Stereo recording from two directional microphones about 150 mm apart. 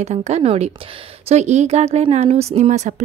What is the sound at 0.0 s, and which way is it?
Speech, 50° right (ahead or behind).